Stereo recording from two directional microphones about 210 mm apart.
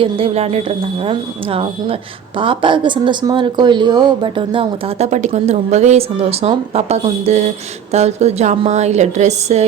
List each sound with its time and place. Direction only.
0.0 s a woman's voice: 25° right (ahead or behind)